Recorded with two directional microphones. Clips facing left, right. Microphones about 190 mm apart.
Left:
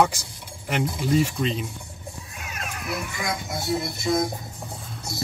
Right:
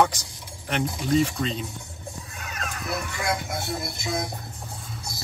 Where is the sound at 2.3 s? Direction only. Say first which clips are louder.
Even; 10° left (ahead or behind).